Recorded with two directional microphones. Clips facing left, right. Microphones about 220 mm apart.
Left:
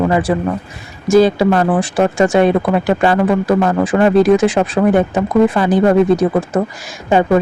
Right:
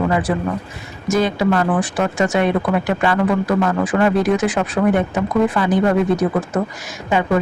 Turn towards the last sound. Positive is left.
turn(degrees=35)  # may be behind; listen again after turning